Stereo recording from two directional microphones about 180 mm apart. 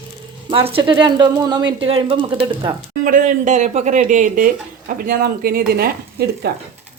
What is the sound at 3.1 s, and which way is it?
Speech, 45° right (ahead or behind).